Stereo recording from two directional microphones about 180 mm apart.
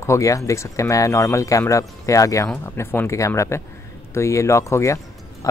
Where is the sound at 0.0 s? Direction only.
15° left (ahead or behind).